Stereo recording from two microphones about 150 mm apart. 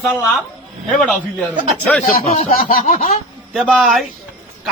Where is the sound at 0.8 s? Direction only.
5° left (ahead or behind).